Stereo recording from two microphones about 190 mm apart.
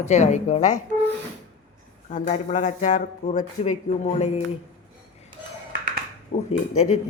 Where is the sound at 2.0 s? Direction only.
40° left (ahead or behind).